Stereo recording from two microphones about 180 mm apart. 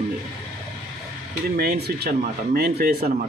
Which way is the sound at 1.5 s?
60° right (ahead or behind).